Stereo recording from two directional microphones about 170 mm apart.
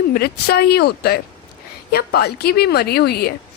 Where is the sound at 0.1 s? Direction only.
65° left (ahead or behind).